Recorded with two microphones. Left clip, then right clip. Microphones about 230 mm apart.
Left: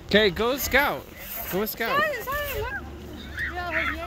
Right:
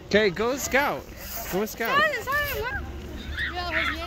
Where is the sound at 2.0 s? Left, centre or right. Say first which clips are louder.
Right 3 dB; left.